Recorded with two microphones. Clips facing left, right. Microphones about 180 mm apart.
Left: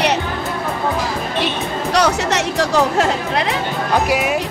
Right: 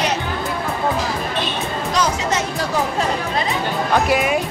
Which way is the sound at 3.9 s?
5° left (ahead or behind).